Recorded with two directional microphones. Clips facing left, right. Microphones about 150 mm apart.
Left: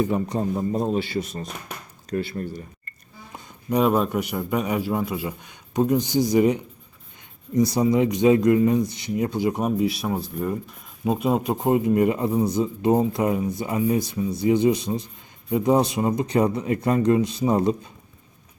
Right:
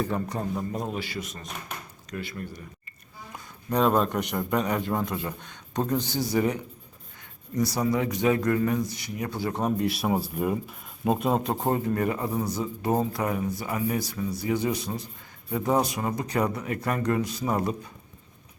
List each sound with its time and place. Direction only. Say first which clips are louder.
0.0 s speech: left 6 dB; 20° left (ahead or behind)
3.7 s speech: left 3 dB; 10° left (ahead or behind)